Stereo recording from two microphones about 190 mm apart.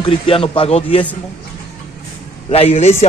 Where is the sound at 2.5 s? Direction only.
30° left (ahead or behind).